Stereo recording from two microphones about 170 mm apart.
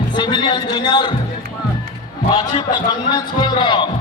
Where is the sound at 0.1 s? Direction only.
25° left (ahead or behind).